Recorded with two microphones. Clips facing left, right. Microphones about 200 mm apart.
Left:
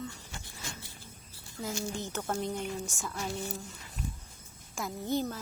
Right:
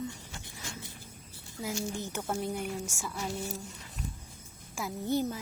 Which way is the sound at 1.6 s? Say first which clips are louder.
Right 1 dB; 20° right (ahead or behind).